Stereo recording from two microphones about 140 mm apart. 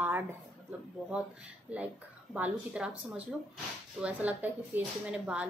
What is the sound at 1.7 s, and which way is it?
A woman's voice, 10° right (ahead or behind).